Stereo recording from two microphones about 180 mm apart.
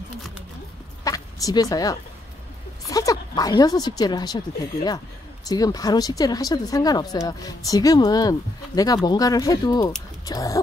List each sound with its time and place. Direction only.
1.0 s a sound: 20° left (ahead or behind)
2.9 s speech: 20° left (ahead or behind)
5.5 s speech: 20° left (ahead or behind)